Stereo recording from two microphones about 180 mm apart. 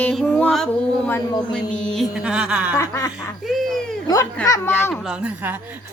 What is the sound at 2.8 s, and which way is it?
Female singing, 20° left (ahead or behind).